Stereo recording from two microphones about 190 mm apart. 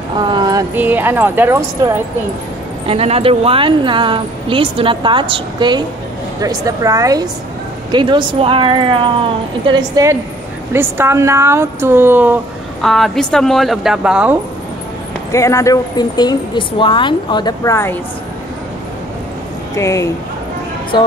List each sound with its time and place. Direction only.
0.2 s speech: 25° right (ahead or behind)
2.9 s speech: 30° right (ahead or behind); by 12.4 s 10° right (ahead or behind)
12.8 s speech: centre (ahead or behind)
15.3 s a woman's voice: 15° left (ahead or behind)
19.7 s speech: 15° left (ahead or behind)